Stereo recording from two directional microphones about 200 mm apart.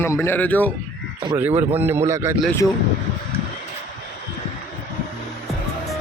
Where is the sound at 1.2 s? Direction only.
15° right (ahead or behind).